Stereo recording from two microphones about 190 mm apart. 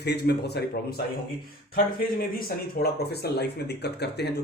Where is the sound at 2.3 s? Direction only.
50° left (ahead or behind).